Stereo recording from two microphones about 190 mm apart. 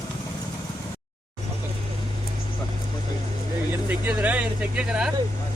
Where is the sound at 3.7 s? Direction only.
10° right (ahead or behind).